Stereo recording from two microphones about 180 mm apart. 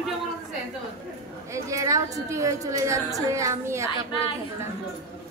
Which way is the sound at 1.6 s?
15° right (ahead or behind).